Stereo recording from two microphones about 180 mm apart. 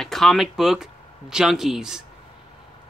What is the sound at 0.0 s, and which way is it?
Speech, centre (ahead or behind).